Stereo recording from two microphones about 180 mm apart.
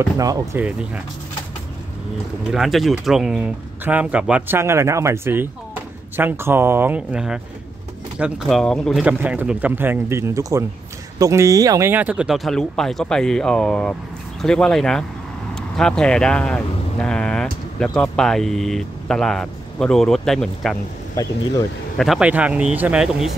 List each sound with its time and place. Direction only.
0.2 s speech: 20° right (ahead or behind)
0.6 s speech: 10° right (ahead or behind)
2.5 s speech: centre (ahead or behind)
9.0 s speech: 10° right (ahead or behind)
21.2 s speech: 20° left (ahead or behind)
21.9 s speech: centre (ahead or behind)